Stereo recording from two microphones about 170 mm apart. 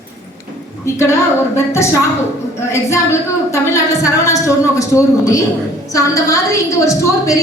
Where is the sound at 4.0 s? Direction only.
20° left (ahead or behind).